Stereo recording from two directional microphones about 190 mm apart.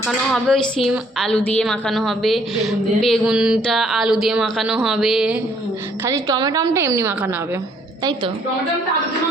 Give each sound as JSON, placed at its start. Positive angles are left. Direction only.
{"t": 0.0, "sound": "a woman's voice", "side_deg": 0}
{"t": 6.1, "sound": "a woman's voice", "side_deg": -15}